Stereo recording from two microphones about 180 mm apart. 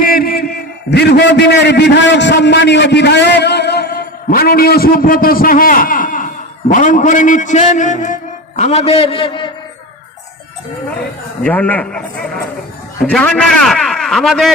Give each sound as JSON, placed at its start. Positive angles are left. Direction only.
{"t": 0.0, "sound": "a sound", "side_deg": 55}
{"t": 0.9, "sound": "a man's voice", "side_deg": 70}
{"t": 11.4, "sound": "a man's voice", "side_deg": 10}